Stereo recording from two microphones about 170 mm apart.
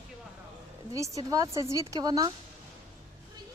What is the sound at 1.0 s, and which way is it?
A woman's voice, 20° right (ahead or behind).